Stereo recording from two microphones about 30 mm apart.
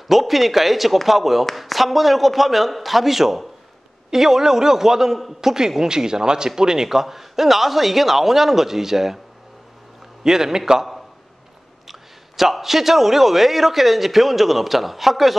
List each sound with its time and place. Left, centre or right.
0.1 s a man's voice: centre
10.2 s speech: centre
11.9 s a man's voice: centre